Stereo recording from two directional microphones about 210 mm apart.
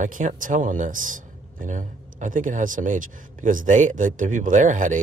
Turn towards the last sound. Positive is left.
turn(degrees=-35)  # may be behind; listen again after turning